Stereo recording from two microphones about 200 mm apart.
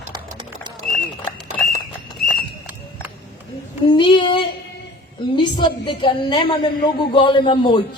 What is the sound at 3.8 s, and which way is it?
Speech, 25° left (ahead or behind).